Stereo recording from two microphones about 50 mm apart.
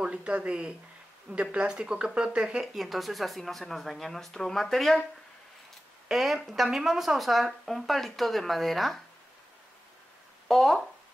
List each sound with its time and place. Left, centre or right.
0.0 s speech: right
2.6 s speech: centre
6.0 s speech: centre
10.5 s speech: centre